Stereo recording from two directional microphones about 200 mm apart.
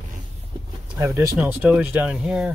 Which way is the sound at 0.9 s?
15° right (ahead or behind).